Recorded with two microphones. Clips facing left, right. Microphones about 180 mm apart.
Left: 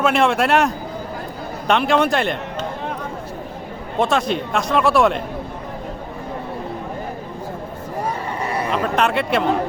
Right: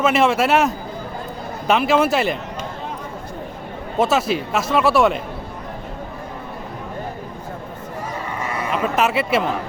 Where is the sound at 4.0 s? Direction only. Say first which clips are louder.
Right 1 dB; 5° right (ahead or behind).